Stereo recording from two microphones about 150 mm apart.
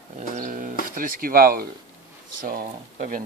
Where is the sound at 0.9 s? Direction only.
70° right (ahead or behind).